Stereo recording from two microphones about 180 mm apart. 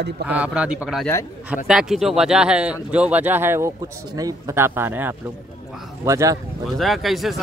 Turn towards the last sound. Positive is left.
turn(degrees=0)  # may be behind; listen again after turning